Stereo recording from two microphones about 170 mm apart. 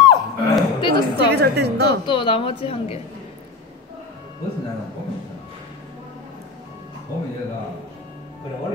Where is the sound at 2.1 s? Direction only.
30° left (ahead or behind).